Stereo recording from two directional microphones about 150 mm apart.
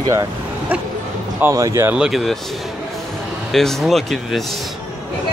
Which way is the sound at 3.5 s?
Centre (ahead or behind).